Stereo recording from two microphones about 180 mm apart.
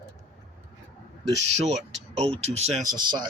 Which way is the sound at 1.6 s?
35° right (ahead or behind).